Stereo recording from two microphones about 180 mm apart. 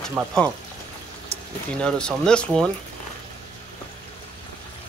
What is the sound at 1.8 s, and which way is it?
Speech, 5° left (ahead or behind).